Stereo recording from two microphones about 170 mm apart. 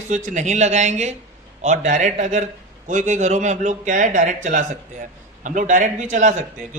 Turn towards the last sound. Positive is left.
turn(degrees=-45)  # may be behind; listen again after turning